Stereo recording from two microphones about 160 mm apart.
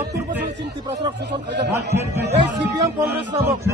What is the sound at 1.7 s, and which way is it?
Speech, 15° right (ahead or behind).